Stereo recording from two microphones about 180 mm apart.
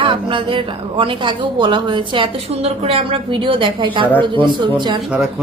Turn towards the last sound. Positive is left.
turn(degrees=-5)  # may be behind; listen again after turning